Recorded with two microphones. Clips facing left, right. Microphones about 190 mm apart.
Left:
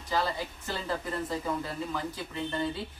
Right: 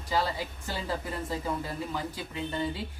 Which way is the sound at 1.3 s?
10° right (ahead or behind).